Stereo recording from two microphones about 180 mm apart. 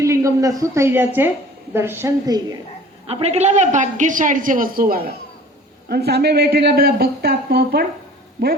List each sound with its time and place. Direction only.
0.0 s a woman's voice: 15° right (ahead or behind)
3.1 s a woman's voice: 35° right (ahead or behind); by 7.9 s 60° right (ahead or behind)